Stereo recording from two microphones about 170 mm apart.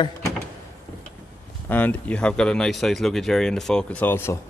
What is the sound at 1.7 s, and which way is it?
A man's voice, 10° left (ahead or behind).